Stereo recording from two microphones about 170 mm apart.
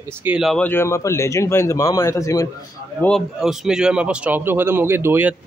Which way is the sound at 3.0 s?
5° left (ahead or behind).